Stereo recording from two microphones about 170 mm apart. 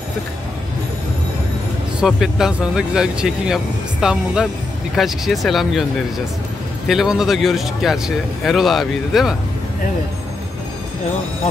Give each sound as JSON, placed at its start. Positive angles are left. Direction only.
{"t": 2.0, "sound": "speech", "side_deg": 0}
{"t": 6.9, "sound": "speech", "side_deg": 0}